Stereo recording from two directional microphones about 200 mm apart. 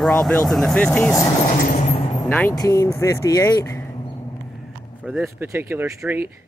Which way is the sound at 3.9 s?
25° left (ahead or behind).